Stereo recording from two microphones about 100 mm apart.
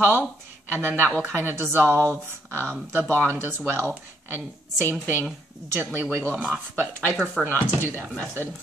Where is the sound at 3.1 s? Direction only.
20° right (ahead or behind).